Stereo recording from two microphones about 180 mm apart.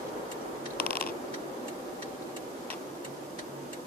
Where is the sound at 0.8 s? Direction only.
55° left (ahead or behind).